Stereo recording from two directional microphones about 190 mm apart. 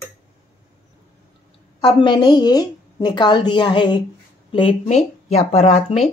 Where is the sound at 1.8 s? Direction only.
25° left (ahead or behind).